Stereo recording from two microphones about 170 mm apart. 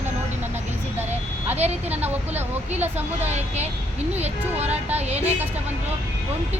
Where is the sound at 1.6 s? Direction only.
40° right (ahead or behind).